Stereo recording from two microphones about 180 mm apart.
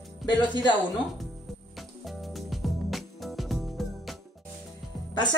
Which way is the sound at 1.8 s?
Centre (ahead or behind).